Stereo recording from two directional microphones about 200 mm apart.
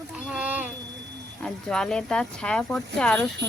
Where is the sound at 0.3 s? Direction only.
10° right (ahead or behind).